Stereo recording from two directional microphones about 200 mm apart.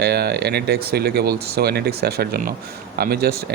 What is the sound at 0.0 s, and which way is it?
Speech, 55° right (ahead or behind).